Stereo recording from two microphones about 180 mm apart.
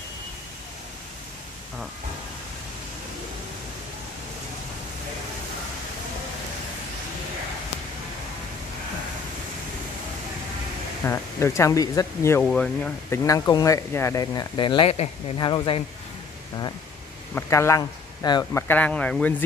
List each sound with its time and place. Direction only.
11.1 s speech: 15° left (ahead or behind)
13.2 s speech: 20° left (ahead or behind)
17.3 s speech: 15° left (ahead or behind)